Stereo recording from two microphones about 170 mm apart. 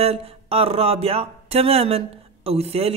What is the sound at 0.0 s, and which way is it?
Speech, 35° right (ahead or behind).